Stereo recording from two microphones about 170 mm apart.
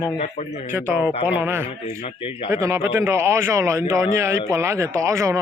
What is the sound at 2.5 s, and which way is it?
A man's voice, 20° right (ahead or behind).